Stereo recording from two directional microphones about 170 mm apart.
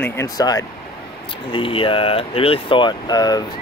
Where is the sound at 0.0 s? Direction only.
15° left (ahead or behind).